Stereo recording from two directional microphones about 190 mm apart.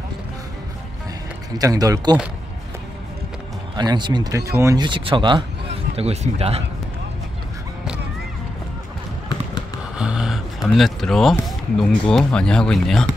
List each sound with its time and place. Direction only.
1.6 s speech: 20° right (ahead or behind)
3.7 s speech: 20° right (ahead or behind)
9.9 s gasp: 5° right (ahead or behind)
10.7 s speech: centre (ahead or behind)